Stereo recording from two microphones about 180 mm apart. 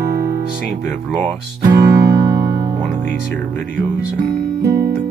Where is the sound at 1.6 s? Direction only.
20° right (ahead or behind).